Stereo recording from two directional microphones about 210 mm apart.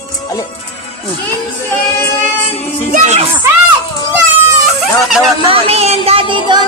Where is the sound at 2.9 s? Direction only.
30° right (ahead or behind).